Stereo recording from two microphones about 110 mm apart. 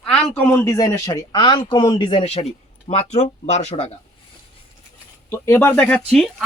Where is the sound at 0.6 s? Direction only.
30° left (ahead or behind); by 2.5 s 65° left (ahead or behind).